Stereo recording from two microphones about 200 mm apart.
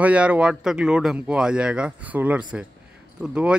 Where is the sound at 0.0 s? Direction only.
5° right (ahead or behind).